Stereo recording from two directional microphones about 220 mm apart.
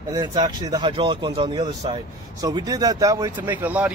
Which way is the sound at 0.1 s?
20° right (ahead or behind).